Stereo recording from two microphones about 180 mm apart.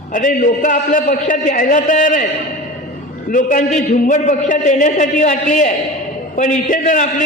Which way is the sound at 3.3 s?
45° left (ahead or behind).